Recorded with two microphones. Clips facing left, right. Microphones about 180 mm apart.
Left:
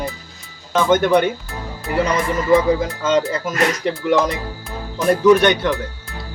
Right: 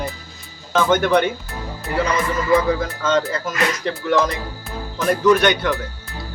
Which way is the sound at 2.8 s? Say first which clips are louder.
Left 2 dB; 15° left (ahead or behind).